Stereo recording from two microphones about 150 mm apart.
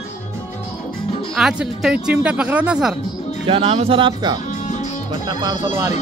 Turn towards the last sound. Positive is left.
turn(degrees=-20)  # may be behind; listen again after turning